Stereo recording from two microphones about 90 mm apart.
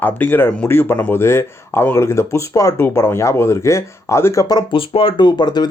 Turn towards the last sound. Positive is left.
turn(degrees=55)  # may be behind; listen again after turning